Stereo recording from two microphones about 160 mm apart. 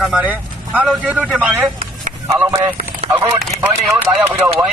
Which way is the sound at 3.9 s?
15° right (ahead or behind).